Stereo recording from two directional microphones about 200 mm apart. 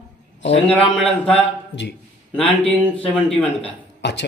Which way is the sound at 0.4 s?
65° left (ahead or behind).